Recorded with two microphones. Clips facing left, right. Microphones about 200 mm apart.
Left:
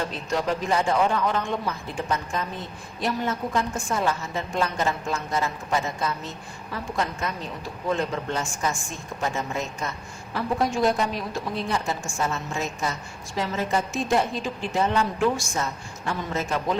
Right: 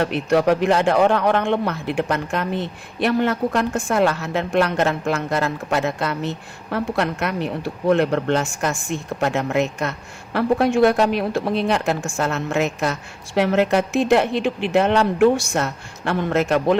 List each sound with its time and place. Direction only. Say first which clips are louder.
0.0 s speech: right 9 dB; 65° right (ahead or behind)